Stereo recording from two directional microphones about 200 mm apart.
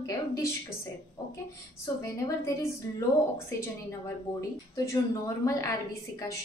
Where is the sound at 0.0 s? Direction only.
15° left (ahead or behind).